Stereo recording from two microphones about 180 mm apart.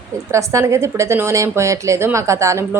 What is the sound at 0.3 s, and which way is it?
A woman's voice, 15° right (ahead or behind).